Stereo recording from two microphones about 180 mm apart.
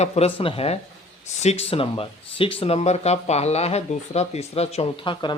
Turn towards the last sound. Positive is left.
turn(degrees=25)  # may be behind; listen again after turning